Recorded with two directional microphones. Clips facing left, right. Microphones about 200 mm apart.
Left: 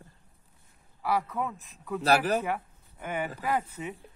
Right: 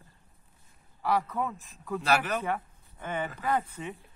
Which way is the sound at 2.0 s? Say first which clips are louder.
Left 4 dB; 35° left (ahead or behind).